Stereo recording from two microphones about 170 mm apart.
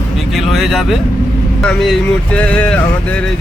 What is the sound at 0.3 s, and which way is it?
Speech, centre (ahead or behind).